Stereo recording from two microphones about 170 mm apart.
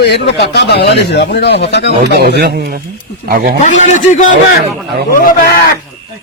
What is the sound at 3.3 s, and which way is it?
Speech, 55° right (ahead or behind).